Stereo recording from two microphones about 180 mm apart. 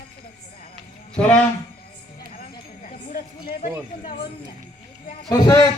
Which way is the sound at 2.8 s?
50° left (ahead or behind).